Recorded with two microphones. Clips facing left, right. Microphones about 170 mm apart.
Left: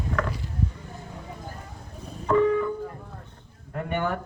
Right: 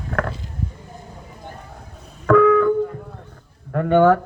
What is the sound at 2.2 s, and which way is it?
Music, 85° right.